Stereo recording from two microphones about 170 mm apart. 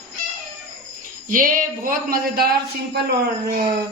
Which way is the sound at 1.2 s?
55° right (ahead or behind).